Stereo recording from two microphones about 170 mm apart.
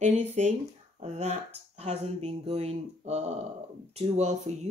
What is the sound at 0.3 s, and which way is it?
Speech, 45° right (ahead or behind).